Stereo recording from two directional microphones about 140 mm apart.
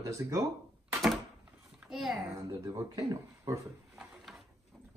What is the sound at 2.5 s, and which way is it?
Speech, 25° right (ahead or behind).